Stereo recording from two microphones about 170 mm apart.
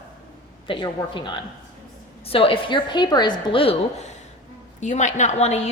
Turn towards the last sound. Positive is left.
turn(degrees=40)  # may be behind; listen again after turning